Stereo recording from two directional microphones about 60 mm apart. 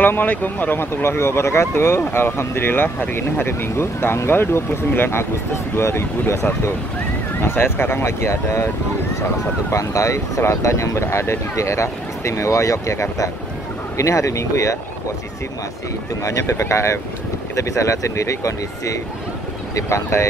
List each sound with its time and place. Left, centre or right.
0.0 s speech: left
9.7 s speech: left
16.3 s speech: left